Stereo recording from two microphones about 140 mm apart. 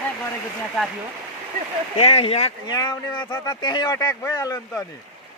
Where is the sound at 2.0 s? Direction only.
45° left (ahead or behind).